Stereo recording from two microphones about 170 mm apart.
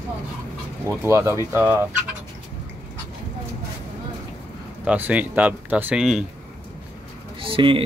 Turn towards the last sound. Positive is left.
turn(degrees=-30)  # may be behind; listen again after turning